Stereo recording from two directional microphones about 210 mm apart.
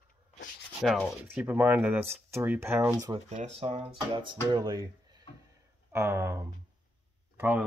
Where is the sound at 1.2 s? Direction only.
10° right (ahead or behind).